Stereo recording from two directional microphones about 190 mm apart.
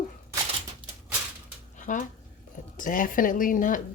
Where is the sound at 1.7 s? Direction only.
40° left (ahead or behind).